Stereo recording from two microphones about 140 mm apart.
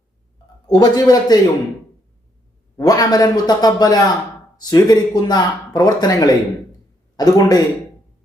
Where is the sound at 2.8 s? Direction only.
25° left (ahead or behind).